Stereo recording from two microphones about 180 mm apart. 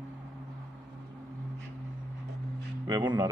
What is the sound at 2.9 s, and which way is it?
Speech, 20° right (ahead or behind).